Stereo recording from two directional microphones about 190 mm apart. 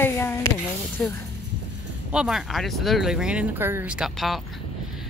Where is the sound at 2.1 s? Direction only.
Centre (ahead or behind).